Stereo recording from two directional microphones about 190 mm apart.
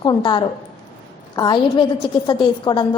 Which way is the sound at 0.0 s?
25° left (ahead or behind).